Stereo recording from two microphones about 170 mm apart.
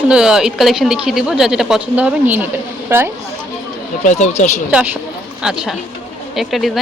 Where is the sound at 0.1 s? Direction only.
5° right (ahead or behind).